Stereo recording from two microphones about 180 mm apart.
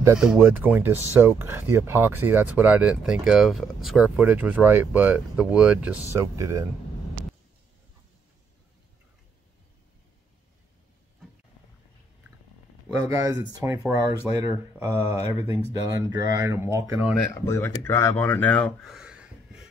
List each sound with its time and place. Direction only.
0.2 s speech: 5° right (ahead or behind)
6.1 s speech: 15° right (ahead or behind)
12.8 s speech: 15° right (ahead or behind)
17.3 s speech: 15° left (ahead or behind); by 19.7 s 5° right (ahead or behind)